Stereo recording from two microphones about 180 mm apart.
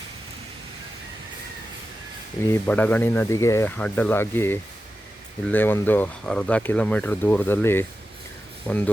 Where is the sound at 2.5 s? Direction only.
10° left (ahead or behind).